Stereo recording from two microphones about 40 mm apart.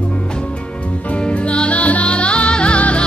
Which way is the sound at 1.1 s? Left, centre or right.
Left.